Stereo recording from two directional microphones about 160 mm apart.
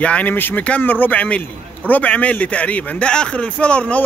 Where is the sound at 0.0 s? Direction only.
10° left (ahead or behind).